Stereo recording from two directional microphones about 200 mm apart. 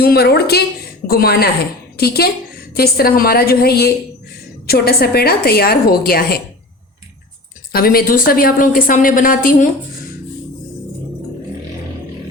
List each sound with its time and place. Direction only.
0.0 s a woman's voice: 50° left (ahead or behind)
7.7 s a woman's voice: 50° left (ahead or behind)